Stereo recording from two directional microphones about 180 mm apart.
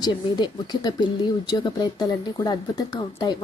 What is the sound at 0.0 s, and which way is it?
Speech, 25° left (ahead or behind).